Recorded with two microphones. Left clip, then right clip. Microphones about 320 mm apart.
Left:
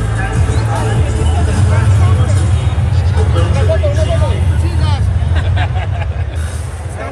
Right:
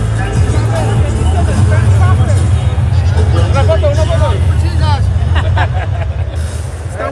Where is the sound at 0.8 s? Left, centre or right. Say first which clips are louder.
Right 1 dB; centre.